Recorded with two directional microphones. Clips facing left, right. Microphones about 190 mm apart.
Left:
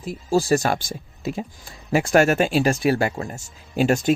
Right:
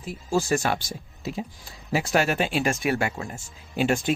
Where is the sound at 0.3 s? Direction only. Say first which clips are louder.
Left 4 dB; 35° left (ahead or behind).